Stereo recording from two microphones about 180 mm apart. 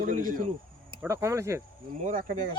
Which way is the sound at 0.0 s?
50° right (ahead or behind).